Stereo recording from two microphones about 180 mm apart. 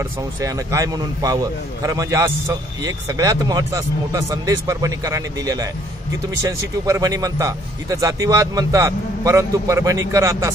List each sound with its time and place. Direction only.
0.4 s a man's voice: 20° right (ahead or behind)
6.9 s a man's voice: 20° right (ahead or behind)